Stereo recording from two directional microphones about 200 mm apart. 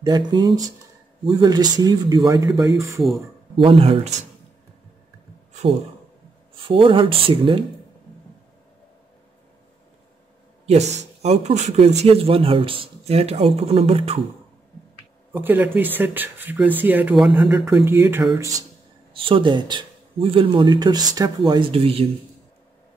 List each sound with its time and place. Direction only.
0.0 s speech: 20° right (ahead or behind)
3.5 s speech: 25° right (ahead or behind)
6.5 s speech: 25° right (ahead or behind)
10.7 s speech: 35° right (ahead or behind)
15.3 s speech: 10° right (ahead or behind)
19.1 s speech: 25° right (ahead or behind)